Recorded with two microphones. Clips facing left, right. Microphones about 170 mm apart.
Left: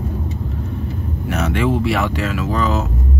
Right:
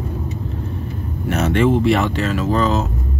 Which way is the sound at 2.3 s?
35° right (ahead or behind).